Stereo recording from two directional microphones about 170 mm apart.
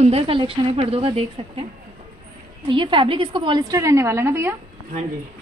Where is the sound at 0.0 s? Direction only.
35° right (ahead or behind).